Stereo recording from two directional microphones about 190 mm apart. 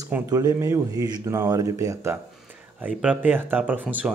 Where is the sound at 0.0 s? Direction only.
20° right (ahead or behind).